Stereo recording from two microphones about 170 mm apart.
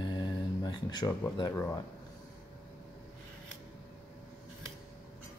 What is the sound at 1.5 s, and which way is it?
Speech, 15° left (ahead or behind).